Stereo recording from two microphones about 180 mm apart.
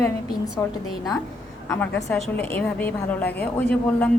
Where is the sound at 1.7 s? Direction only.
5° left (ahead or behind).